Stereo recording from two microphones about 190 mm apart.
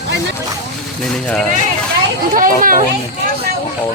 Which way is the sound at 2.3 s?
45° right (ahead or behind).